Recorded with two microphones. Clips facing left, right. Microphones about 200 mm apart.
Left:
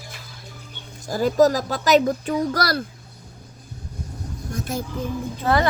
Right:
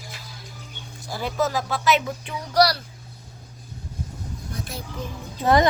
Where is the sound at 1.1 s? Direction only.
40° left (ahead or behind).